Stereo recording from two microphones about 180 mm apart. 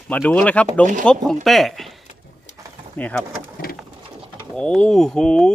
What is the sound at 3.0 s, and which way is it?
Speech, 5° left (ahead or behind).